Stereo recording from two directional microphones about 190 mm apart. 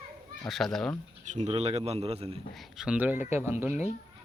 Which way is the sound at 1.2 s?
40° right (ahead or behind).